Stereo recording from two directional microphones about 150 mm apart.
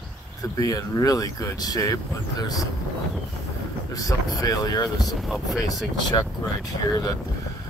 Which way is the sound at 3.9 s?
25° left (ahead or behind).